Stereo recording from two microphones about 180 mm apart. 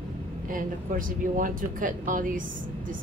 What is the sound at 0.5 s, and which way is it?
Speech, 50° right (ahead or behind).